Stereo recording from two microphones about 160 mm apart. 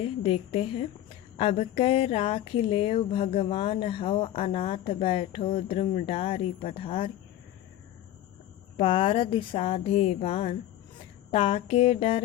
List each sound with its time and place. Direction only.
0.0 s speech: 35° left (ahead or behind)
8.8 s speech: 30° left (ahead or behind)